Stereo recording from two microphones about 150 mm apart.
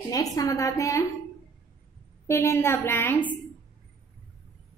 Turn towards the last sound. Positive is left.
turn(degrees=15)  # may be behind; listen again after turning